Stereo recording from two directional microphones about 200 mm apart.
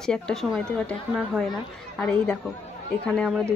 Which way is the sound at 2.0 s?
5° left (ahead or behind).